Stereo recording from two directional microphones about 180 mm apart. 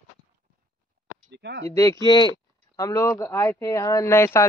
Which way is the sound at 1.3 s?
70° right (ahead or behind).